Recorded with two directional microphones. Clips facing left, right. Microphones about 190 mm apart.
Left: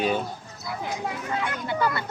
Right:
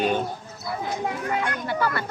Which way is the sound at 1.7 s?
20° left (ahead or behind).